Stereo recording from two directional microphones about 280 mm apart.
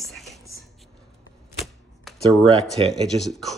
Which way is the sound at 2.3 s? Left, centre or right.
Centre.